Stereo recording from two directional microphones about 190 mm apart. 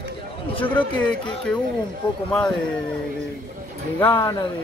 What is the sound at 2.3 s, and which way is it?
Speech, 5° left (ahead or behind).